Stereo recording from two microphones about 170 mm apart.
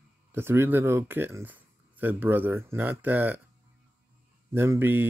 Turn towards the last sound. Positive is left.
turn(degrees=-15)  # may be behind; listen again after turning